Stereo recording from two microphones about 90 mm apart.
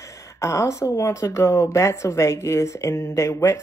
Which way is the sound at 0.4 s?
35° left (ahead or behind).